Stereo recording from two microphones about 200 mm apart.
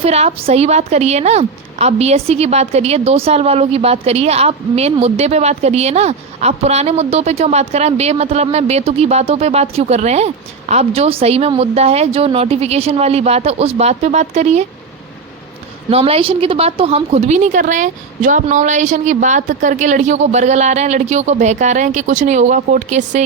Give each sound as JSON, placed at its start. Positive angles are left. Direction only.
{"t": 0.0, "sound": "speech", "side_deg": -30}
{"t": 15.9, "sound": "speech", "side_deg": -30}